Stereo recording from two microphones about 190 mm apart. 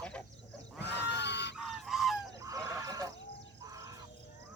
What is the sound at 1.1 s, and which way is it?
Goose, 65° left (ahead or behind).